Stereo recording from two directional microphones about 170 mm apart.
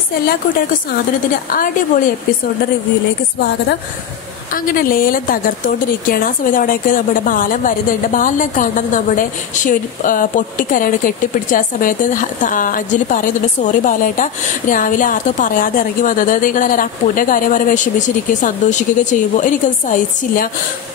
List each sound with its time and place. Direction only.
1.5 s a woman's voice: 55° left (ahead or behind)
4.5 s a woman's voice: 55° left (ahead or behind)